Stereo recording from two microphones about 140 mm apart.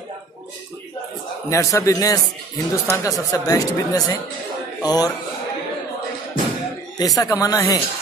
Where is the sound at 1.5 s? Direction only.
20° left (ahead or behind).